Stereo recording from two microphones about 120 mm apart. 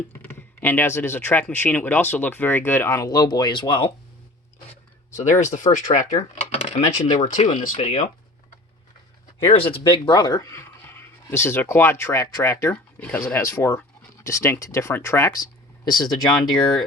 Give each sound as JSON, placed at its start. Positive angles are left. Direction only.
{"t": 0.1, "sound": "speech", "side_deg": 20}
{"t": 5.1, "sound": "speech", "side_deg": 80}
{"t": 6.3, "sound": "speech", "side_deg": 65}
{"t": 7.8, "sound": "speech", "side_deg": 60}
{"t": 9.4, "sound": "speech", "side_deg": 50}
{"t": 15.8, "sound": "speech", "side_deg": 35}